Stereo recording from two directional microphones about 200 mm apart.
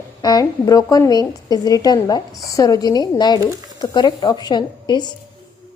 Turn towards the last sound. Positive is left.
turn(degrees=20)  # may be behind; listen again after turning